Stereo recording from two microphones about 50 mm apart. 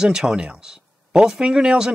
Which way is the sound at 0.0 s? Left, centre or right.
Centre.